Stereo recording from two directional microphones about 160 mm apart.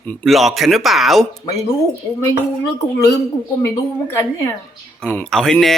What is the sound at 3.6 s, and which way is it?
A woman's voice, 15° left (ahead or behind).